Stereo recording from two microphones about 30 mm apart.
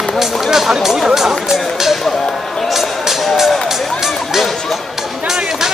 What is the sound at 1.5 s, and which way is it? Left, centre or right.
Run, centre.